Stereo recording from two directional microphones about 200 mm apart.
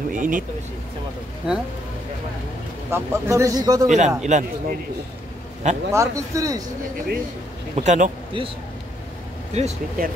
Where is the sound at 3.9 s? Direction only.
35° right (ahead or behind).